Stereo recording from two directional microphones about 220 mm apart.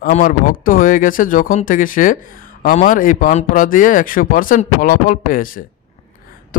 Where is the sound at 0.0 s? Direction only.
40° left (ahead or behind).